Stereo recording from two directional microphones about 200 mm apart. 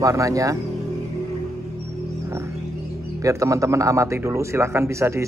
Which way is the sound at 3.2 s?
15° right (ahead or behind).